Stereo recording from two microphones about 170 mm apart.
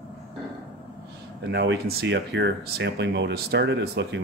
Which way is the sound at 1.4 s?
75° right (ahead or behind).